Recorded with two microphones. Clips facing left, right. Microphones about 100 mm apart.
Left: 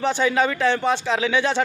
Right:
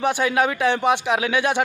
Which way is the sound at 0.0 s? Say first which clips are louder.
Even; 10° right (ahead or behind).